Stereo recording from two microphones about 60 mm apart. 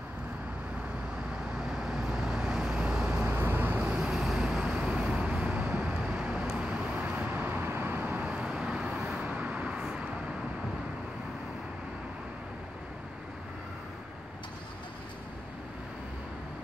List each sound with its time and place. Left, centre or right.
1.7 s vehicle: centre
3.3 s vehicle: right
3.8 s vehicle: centre
7.0 s vehicle: right